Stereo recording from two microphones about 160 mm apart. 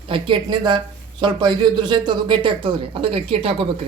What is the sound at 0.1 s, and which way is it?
Speech, 30° right (ahead or behind).